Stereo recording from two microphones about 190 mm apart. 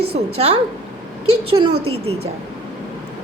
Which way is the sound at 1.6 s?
30° right (ahead or behind).